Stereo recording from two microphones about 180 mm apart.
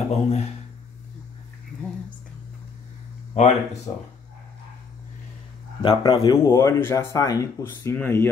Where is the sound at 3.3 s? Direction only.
40° left (ahead or behind).